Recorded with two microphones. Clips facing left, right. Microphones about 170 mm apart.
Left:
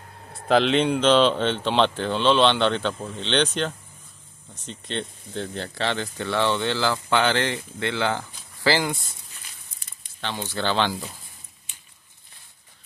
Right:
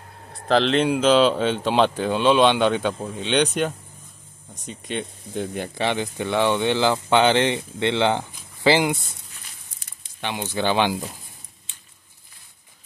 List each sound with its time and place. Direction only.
0.3 s speech: 5° left (ahead or behind); by 9.0 s 20° right (ahead or behind)
10.2 s speech: 15° right (ahead or behind)